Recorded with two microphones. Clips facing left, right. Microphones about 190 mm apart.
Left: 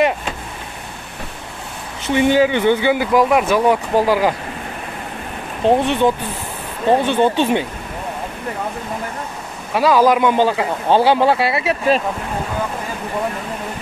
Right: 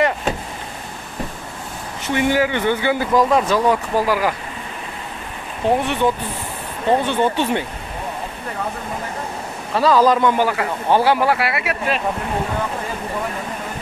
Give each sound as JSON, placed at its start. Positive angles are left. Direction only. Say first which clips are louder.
{"t": 2.1, "sound": "speech", "louder": "left 4 dB", "side_deg": 20}
{"t": 5.6, "sound": "speech", "louder": "left 3 dB", "side_deg": 20}
{"t": 6.9, "sound": "speech", "louder": "left 3 dB", "side_deg": 20}
{"t": 9.8, "sound": "speech", "louder": "left 1 dB", "side_deg": 10}